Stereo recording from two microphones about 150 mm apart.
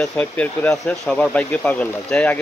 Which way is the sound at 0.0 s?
10° left (ahead or behind).